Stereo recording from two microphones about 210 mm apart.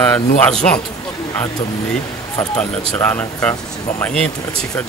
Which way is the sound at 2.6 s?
10° left (ahead or behind).